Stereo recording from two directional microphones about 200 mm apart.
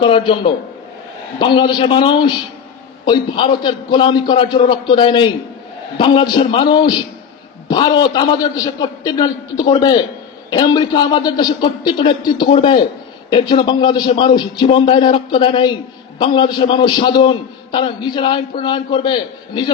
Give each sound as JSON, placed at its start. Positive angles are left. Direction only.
{"t": 0.0, "sound": "a man's voice", "side_deg": 25}